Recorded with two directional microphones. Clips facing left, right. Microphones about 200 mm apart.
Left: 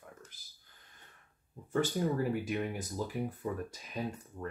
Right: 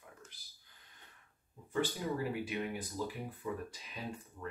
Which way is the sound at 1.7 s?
45° left (ahead or behind).